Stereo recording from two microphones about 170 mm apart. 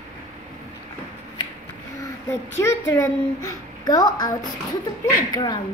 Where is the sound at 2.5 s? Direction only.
20° left (ahead or behind).